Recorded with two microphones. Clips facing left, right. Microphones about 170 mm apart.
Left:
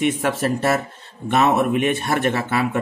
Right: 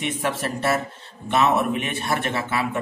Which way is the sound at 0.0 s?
45° left (ahead or behind).